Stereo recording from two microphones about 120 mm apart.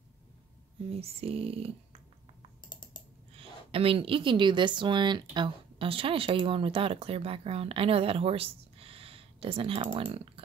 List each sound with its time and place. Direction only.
0.8 s speech: 55° right (ahead or behind)
3.3 s a woman's voice: 50° right (ahead or behind)